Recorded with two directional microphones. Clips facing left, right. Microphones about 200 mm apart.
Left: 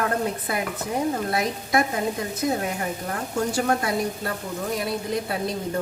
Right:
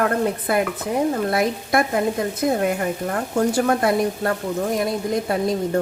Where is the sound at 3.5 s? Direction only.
55° right (ahead or behind).